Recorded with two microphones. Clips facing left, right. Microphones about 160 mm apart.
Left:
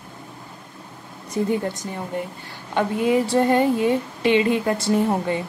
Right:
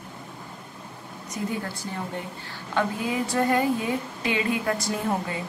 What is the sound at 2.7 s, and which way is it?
A woman's voice, 25° left (ahead or behind).